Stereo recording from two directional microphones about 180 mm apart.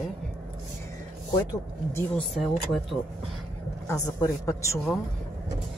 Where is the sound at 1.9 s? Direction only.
5° left (ahead or behind).